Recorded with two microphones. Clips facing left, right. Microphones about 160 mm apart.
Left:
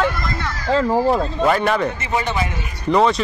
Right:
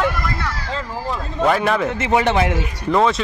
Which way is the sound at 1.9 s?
85° right.